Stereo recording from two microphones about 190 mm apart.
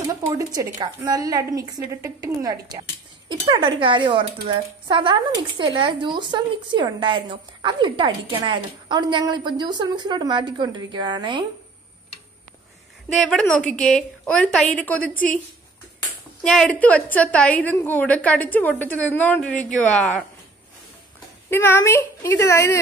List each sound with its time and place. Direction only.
0.1 s a woman's voice: 20° right (ahead or behind)
13.2 s a woman's voice: 5° left (ahead or behind)
16.4 s a woman's voice: 5° left (ahead or behind)
21.5 s a woman's voice: 10° left (ahead or behind)